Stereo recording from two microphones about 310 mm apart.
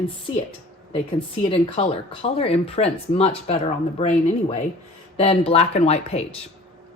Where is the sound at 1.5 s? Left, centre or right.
Centre.